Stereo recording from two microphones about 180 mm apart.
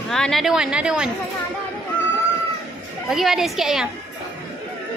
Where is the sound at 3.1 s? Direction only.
Centre (ahead or behind).